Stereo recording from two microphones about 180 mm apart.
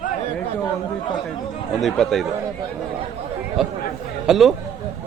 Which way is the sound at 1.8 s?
Centre (ahead or behind).